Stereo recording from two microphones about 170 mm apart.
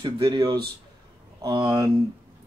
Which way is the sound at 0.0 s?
25° right (ahead or behind).